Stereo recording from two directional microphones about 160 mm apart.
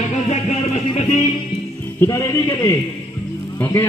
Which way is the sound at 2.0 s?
20° left (ahead or behind).